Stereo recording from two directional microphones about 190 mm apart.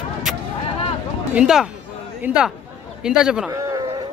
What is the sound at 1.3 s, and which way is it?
A man's voice, 5° right (ahead or behind).